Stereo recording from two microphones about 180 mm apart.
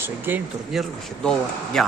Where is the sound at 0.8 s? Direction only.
Centre (ahead or behind).